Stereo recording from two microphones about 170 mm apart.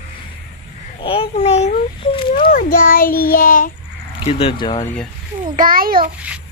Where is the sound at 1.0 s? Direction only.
30° left (ahead or behind).